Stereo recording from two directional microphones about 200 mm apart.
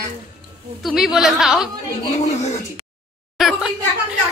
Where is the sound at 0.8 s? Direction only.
Centre (ahead or behind).